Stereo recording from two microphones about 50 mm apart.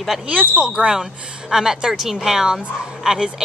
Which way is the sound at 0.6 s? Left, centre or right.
Centre.